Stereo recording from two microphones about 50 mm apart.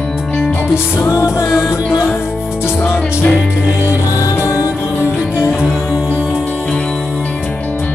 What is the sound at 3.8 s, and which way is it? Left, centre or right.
Music, left.